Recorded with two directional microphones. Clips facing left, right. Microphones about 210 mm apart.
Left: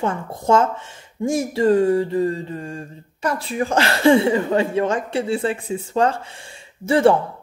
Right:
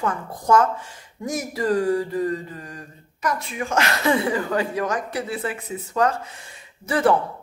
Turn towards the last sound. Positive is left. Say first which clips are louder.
# left 4 dB
turn(degrees=25)  # may be behind; listen again after turning